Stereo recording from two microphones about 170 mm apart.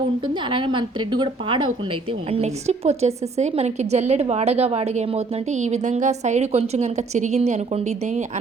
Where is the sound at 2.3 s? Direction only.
40° right (ahead or behind).